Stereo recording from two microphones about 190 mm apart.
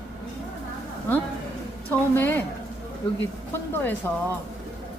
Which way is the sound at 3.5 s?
10° left (ahead or behind).